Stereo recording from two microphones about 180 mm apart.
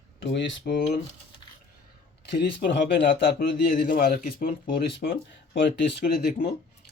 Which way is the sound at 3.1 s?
60° left (ahead or behind).